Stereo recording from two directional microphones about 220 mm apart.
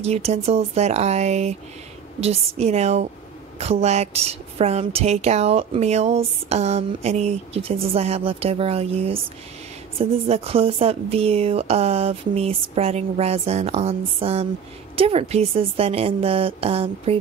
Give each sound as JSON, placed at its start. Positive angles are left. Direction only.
{"t": 0.0, "sound": "a woman's voice", "side_deg": -30}